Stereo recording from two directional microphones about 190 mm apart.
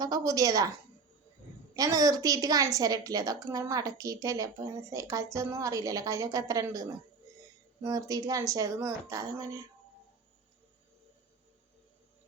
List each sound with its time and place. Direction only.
0.0 s a woman's voice: 20° right (ahead or behind)
1.7 s a woman's voice: 20° right (ahead or behind)